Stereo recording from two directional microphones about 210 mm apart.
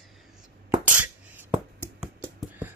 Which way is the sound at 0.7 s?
10° right (ahead or behind).